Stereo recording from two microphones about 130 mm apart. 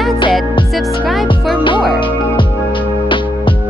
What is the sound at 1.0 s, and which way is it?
Music, centre (ahead or behind).